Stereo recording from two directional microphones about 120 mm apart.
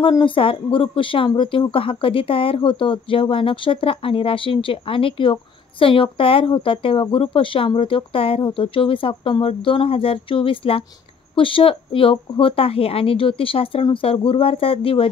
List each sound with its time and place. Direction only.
0.1 s a woman's voice: 45° left (ahead or behind)